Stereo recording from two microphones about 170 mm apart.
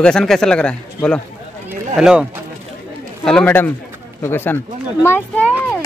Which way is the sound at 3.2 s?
5° left (ahead or behind).